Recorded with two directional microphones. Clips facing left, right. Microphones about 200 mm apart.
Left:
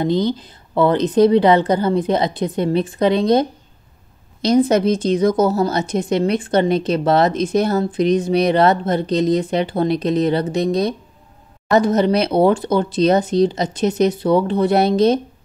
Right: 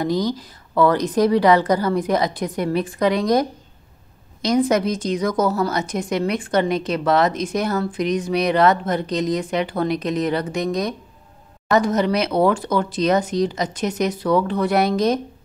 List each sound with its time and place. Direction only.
0.0 s a woman's voice: 25° left (ahead or behind)